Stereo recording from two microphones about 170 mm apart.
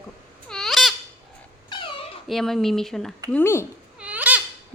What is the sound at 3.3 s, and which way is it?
Speech, 15° left (ahead or behind).